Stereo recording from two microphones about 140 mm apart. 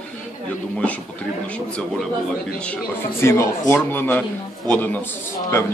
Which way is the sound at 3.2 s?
20° left (ahead or behind).